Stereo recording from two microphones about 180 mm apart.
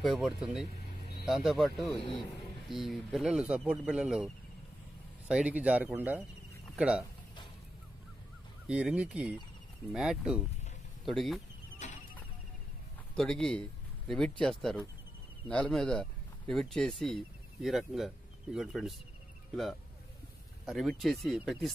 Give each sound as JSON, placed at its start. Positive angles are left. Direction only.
{"t": 0.0, "sound": "speech", "side_deg": 0}
{"t": 5.3, "sound": "speech", "side_deg": -5}
{"t": 8.6, "sound": "speech", "side_deg": -5}
{"t": 11.8, "sound": "a sound", "side_deg": 40}
{"t": 13.1, "sound": "speech", "side_deg": 5}